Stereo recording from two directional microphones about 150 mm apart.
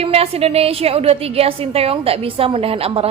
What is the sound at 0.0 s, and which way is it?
A woman's voice, 40° right (ahead or behind).